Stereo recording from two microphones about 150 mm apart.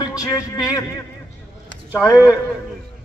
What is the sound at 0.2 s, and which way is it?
Speech, 25° left (ahead or behind).